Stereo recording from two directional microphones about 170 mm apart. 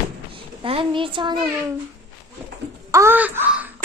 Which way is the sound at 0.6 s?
30° right (ahead or behind).